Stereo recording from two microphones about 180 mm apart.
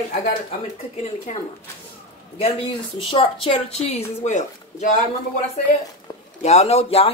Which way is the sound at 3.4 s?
35° left (ahead or behind).